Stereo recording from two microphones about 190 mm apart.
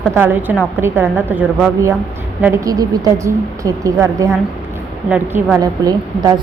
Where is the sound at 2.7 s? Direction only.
20° right (ahead or behind).